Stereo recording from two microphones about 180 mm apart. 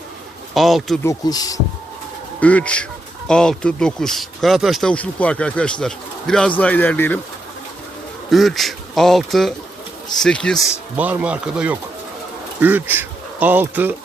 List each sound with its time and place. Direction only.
0.5 s speech: centre (ahead or behind)
1.0 s speech: 20° left (ahead or behind)
2.4 s a man's voice: 10° left (ahead or behind)
8.3 s speech: centre (ahead or behind)
10.9 s speech: 10° right (ahead or behind)